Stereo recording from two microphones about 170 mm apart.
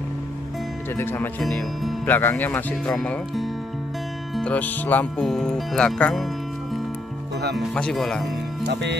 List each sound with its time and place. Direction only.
0.9 s speech: 15° left (ahead or behind)
1.4 s music: centre (ahead or behind)
2.0 s speech: 10° left (ahead or behind)
4.4 s music: 10° left (ahead or behind)
7.5 s music: 5° left (ahead or behind)